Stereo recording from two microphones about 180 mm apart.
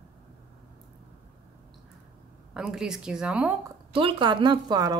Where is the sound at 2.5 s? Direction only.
5° right (ahead or behind).